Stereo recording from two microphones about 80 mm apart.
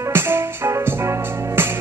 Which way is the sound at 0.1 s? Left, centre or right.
Right.